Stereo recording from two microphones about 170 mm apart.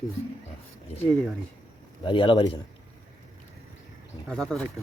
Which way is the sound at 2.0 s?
30° left (ahead or behind).